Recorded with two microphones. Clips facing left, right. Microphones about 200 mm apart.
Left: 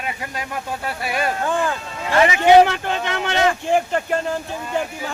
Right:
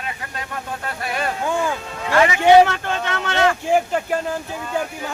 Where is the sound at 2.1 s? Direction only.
20° left (ahead or behind).